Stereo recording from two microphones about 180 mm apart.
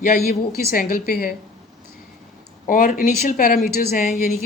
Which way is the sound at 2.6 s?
50° left (ahead or behind).